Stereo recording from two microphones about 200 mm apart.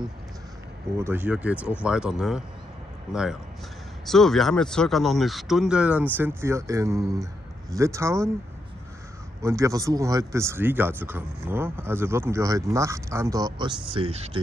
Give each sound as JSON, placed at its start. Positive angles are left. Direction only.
{"t": 0.9, "sound": "speech", "side_deg": -10}
{"t": 9.4, "sound": "speech", "side_deg": -15}